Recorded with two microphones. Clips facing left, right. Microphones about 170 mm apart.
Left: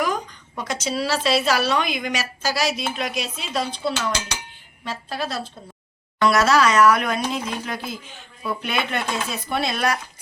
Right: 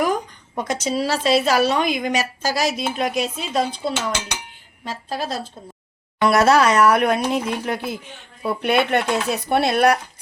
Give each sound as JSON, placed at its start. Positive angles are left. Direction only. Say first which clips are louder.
{"t": 0.0, "sound": "a woman's voice", "louder": "right 3 dB", "side_deg": -50}
{"t": 4.8, "sound": "a woman's voice", "louder": "right 1 dB", "side_deg": -40}
{"t": 6.2, "sound": "speech", "louder": "right 3 dB", "side_deg": -55}